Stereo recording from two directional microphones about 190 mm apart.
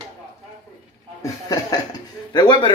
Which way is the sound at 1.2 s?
20° left (ahead or behind).